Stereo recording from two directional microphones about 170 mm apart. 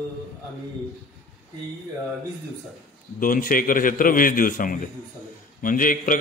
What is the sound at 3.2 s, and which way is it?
A man's voice, 55° left (ahead or behind).